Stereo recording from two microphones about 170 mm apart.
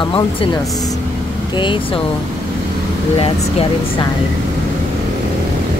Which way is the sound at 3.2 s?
35° left (ahead or behind).